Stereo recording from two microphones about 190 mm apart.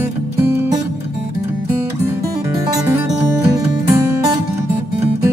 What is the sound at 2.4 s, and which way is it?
Music, 15° right (ahead or behind).